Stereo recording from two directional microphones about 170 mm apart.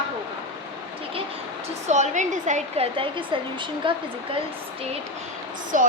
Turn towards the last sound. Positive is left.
turn(degrees=-50)  # may be behind; listen again after turning